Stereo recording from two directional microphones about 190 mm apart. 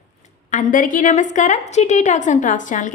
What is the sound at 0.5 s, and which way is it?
A woman's voice, 45° left (ahead or behind).